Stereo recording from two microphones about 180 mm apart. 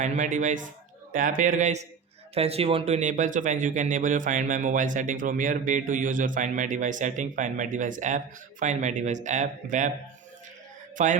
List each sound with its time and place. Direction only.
0.0 s speech: 45° right (ahead or behind)
10.9 s speech: 45° right (ahead or behind)